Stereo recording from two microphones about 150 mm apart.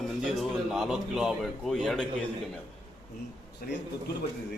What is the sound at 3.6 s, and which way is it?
Speech, 80° left.